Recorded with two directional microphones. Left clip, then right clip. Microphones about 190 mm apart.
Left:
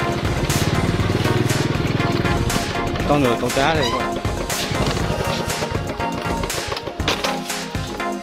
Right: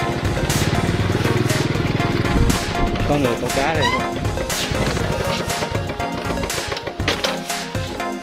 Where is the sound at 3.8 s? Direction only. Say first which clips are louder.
Right 1 dB; centre (ahead or behind).